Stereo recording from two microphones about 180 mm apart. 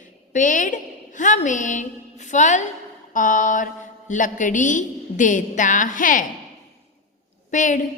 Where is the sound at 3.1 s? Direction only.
45° left (ahead or behind).